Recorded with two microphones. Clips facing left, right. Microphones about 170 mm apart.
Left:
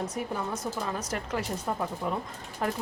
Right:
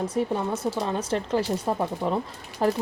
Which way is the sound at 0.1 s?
30° right (ahead or behind).